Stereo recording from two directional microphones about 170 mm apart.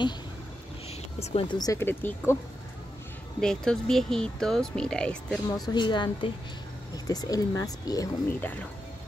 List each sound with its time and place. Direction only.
1.2 s speech: 35° left (ahead or behind)
1.6 s speech: 15° left (ahead or behind)
3.3 s speech: 5° left (ahead or behind)
5.5 s speech: 25° left (ahead or behind)